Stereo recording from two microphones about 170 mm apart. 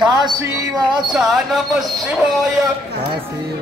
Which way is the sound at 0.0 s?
25° right (ahead or behind).